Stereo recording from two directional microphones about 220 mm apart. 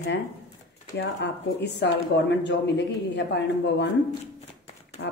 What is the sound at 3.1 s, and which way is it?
Speech, 50° left (ahead or behind).